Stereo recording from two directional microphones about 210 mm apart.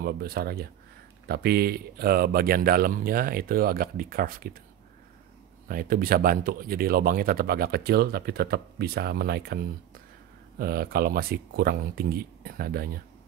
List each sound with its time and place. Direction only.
0.0 s speech: 45° right (ahead or behind)
5.7 s speech: 45° right (ahead or behind)
10.6 s speech: 45° right (ahead or behind)